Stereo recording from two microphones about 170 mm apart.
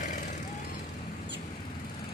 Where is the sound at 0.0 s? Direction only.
45° left (ahead or behind).